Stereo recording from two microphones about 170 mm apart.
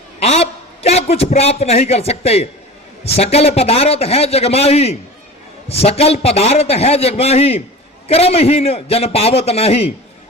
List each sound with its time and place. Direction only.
0.2 s a man's voice: 35° left (ahead or behind)